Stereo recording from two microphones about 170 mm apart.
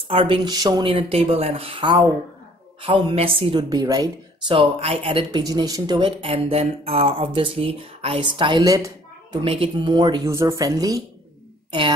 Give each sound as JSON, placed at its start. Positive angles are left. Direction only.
{"t": 0.1, "sound": "a woman's voice", "side_deg": -30}
{"t": 9.4, "sound": "speech", "side_deg": -35}